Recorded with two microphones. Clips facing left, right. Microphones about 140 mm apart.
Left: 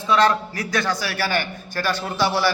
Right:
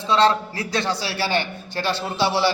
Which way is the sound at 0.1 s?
25° right (ahead or behind).